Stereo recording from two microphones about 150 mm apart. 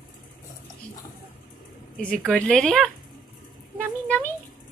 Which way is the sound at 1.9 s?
5° left (ahead or behind).